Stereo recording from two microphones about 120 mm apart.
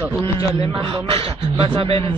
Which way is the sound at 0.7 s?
55° right (ahead or behind).